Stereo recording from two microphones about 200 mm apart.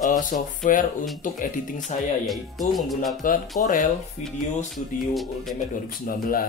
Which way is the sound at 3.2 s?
40° left (ahead or behind).